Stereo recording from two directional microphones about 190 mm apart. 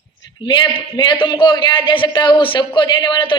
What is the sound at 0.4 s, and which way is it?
A man's voice, 25° left (ahead or behind).